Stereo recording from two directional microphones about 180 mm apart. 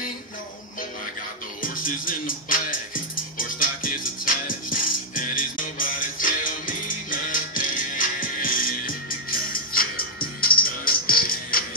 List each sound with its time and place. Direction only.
1.6 s music: 50° left (ahead or behind)